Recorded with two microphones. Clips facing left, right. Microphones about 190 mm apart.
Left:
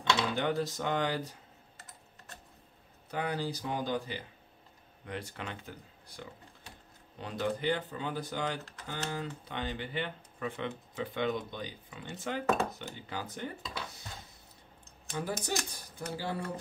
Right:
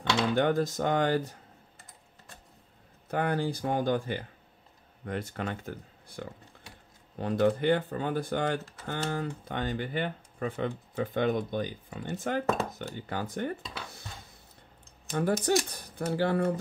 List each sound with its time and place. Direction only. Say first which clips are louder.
0.4 s speech: right 6 dB; 50° right (ahead or behind)
3.1 s speech: right 5 dB; 55° right (ahead or behind)
15.4 s speech: right 9 dB; 60° right (ahead or behind)